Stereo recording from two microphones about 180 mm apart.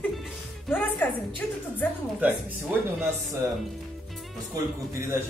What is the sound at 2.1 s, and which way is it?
Music, 10° right (ahead or behind).